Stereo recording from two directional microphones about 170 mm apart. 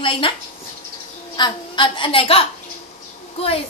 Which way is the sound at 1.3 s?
25° left (ahead or behind).